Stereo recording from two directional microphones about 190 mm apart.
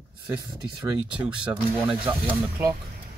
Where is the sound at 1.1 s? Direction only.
5° right (ahead or behind).